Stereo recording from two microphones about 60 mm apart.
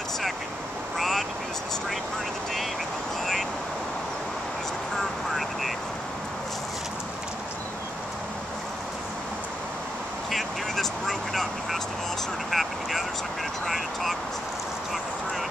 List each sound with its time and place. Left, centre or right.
0.9 s vehicle: centre
4.9 s vehicle: centre
10.3 s vehicle: centre
13.7 s a sound: centre